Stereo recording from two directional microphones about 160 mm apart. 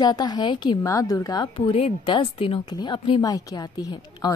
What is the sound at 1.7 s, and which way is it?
Speech, 35° left (ahead or behind).